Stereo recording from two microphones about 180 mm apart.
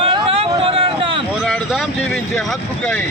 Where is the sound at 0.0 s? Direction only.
30° right (ahead or behind).